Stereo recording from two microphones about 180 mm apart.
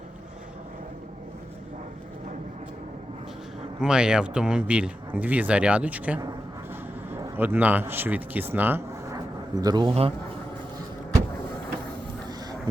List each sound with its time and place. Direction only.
3.8 s speech: 5° right (ahead or behind)
9.6 s speech: 25° right (ahead or behind)